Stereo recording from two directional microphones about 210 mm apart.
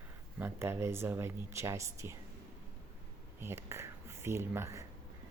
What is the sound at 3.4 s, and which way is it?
Speech, 10° right (ahead or behind).